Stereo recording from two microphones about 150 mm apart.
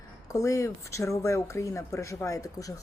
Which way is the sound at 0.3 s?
20° left (ahead or behind).